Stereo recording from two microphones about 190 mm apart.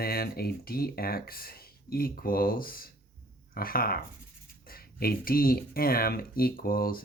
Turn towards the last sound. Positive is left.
turn(degrees=50)  # may be behind; listen again after turning